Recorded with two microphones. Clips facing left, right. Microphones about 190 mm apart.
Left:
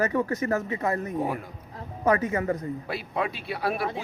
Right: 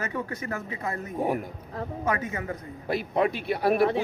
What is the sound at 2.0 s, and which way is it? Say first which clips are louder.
Speech: left 7 dB; 40° left (ahead or behind).